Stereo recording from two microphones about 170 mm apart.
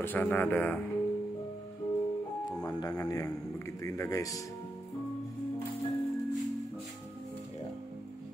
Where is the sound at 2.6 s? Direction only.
20° left (ahead or behind).